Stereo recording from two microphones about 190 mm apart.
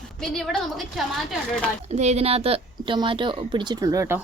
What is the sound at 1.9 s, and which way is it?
A woman's voice, 35° right (ahead or behind).